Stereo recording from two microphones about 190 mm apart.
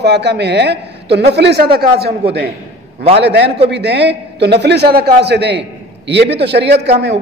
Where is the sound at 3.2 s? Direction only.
60° right (ahead or behind).